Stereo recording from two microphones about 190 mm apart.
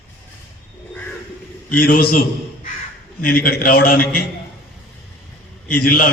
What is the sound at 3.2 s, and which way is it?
Speech, 55° left (ahead or behind).